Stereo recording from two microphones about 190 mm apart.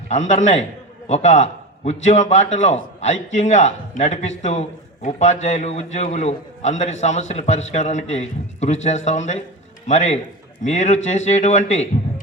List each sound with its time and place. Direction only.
0.1 s a man's voice: 35° left (ahead or behind)